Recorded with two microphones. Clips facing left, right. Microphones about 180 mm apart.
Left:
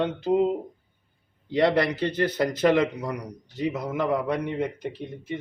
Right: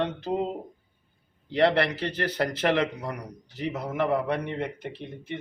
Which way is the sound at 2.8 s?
15° left (ahead or behind).